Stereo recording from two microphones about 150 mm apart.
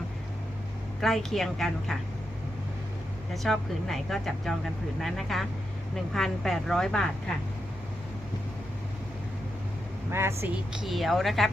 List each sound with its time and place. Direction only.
1.0 s speech: centre (ahead or behind)
3.3 s speech: centre (ahead or behind)
10.1 s a woman's voice: 15° right (ahead or behind)
10.7 s speech: centre (ahead or behind)